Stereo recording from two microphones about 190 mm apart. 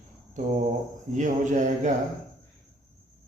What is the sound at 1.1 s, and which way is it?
Speech, 40° right (ahead or behind).